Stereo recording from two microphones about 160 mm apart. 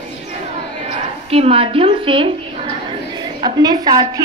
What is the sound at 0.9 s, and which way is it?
A woman's voice, 40° right (ahead or behind).